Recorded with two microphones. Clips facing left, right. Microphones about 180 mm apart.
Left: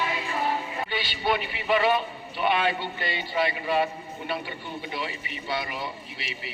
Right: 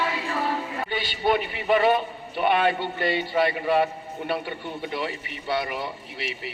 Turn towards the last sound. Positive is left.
turn(degrees=-60)  # may be behind; listen again after turning